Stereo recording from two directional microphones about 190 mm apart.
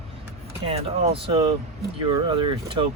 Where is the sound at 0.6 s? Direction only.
30° right (ahead or behind).